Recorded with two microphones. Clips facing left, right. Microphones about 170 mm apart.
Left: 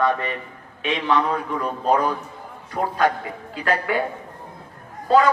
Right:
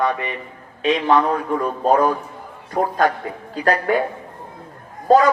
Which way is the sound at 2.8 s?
40° right (ahead or behind).